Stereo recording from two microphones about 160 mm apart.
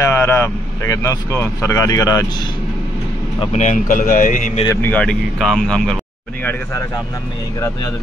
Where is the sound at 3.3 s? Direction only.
45° left (ahead or behind).